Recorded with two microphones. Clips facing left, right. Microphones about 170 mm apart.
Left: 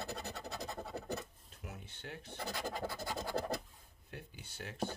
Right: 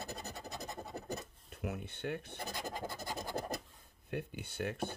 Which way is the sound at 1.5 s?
65° right (ahead or behind).